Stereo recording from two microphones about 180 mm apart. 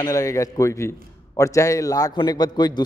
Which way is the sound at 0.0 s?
20° left (ahead or behind).